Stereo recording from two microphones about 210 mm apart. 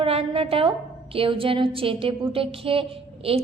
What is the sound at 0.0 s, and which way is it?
A woman's voice, 25° right (ahead or behind).